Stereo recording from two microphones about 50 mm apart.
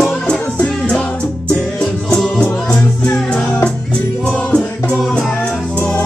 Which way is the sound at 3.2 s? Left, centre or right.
Centre.